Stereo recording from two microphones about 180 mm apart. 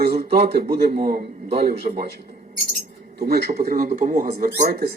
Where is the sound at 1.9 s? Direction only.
45° right (ahead or behind).